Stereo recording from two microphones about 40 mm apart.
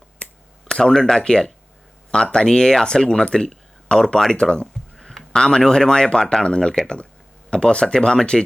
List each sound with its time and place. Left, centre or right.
0.2 s finger snapping: left
0.7 s speech: centre
4.6 s speech: centre